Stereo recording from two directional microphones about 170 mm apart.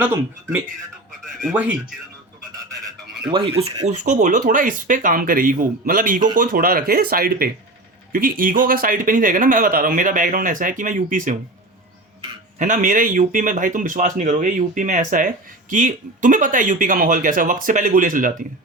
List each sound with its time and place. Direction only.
0.0 s speech: 10° right (ahead or behind)
1.2 s a sound: centre (ahead or behind)
1.5 s speech: 10° right (ahead or behind)
3.2 s speech: 30° right (ahead or behind)
3.8 s speech: 45° right (ahead or behind)
12.5 s speech: 50° right (ahead or behind)